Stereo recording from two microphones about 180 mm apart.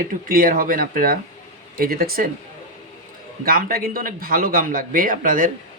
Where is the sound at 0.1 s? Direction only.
50° right (ahead or behind).